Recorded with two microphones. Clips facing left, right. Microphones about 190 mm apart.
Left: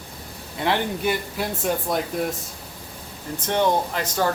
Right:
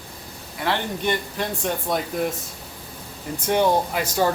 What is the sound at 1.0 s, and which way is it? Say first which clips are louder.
Speech: even; 5° left (ahead or behind).